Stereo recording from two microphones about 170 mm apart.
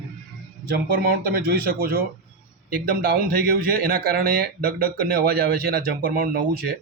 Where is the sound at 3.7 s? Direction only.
60° right (ahead or behind).